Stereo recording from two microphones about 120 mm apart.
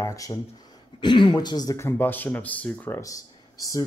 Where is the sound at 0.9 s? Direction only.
40° left (ahead or behind); by 3.0 s 15° left (ahead or behind).